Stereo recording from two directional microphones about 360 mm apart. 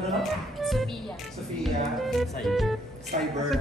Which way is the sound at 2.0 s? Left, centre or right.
Centre.